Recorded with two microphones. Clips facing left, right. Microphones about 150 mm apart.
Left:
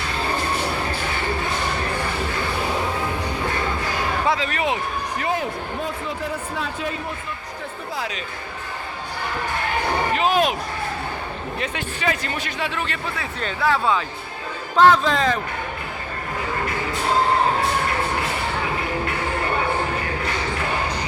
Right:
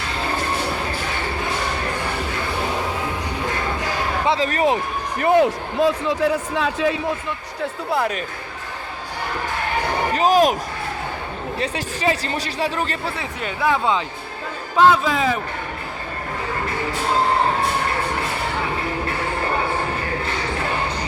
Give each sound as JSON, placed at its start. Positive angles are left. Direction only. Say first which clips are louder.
{"t": 4.4, "sound": "speech", "louder": "right 5 dB", "side_deg": -40}
{"t": 5.2, "sound": "speech", "louder": "right 11 dB", "side_deg": -70}
{"t": 7.9, "sound": "speech", "louder": "right 8 dB", "side_deg": -55}
{"t": 10.2, "sound": "speech", "louder": "right 5 dB", "side_deg": -40}
{"t": 11.6, "sound": "speech", "louder": "right 4 dB", "side_deg": -35}
{"t": 13.4, "sound": "speech", "louder": "right 1 dB", "side_deg": -15}
{"t": 14.8, "sound": "a man's voice", "louder": "even", "side_deg": -10}